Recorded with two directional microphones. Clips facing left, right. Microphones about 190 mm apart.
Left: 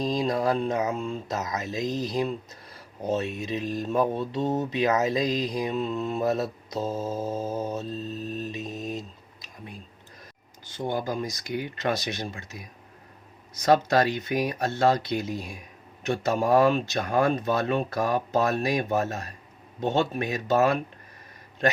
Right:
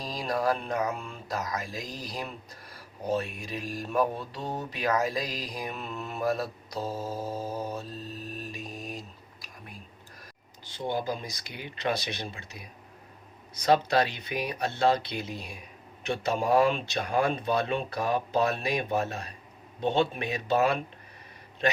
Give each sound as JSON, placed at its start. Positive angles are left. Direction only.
{"t": 0.0, "sound": "speech", "side_deg": 20}
{"t": 10.7, "sound": "speech", "side_deg": 50}
{"t": 13.6, "sound": "speech", "side_deg": 45}